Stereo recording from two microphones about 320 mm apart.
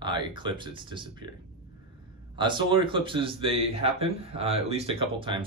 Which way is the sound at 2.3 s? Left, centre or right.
Centre.